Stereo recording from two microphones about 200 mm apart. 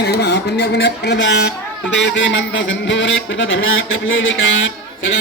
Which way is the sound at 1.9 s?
65° left (ahead or behind).